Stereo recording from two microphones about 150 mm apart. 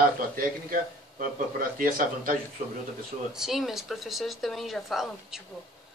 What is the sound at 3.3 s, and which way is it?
Speech, centre (ahead or behind).